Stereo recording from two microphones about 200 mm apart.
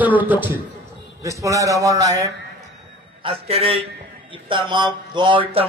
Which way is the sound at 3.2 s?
30° right (ahead or behind).